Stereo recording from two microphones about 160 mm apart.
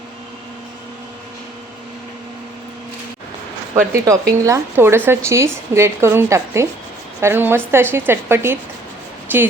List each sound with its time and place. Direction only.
3.9 s a woman's voice: 20° right (ahead or behind)